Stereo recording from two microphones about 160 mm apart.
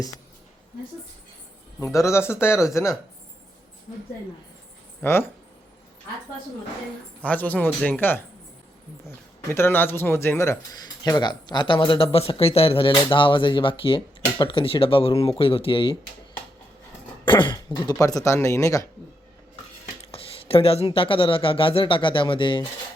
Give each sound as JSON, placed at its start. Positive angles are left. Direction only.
{"t": 1.8, "sound": "speech", "side_deg": 20}
{"t": 5.0, "sound": "speech", "side_deg": 15}
{"t": 7.2, "sound": "speech", "side_deg": 10}
{"t": 9.5, "sound": "speech", "side_deg": 15}
{"t": 17.2, "sound": "throat clearing", "side_deg": 30}
{"t": 18.0, "sound": "speech", "side_deg": 20}
{"t": 20.1, "sound": "speech", "side_deg": 35}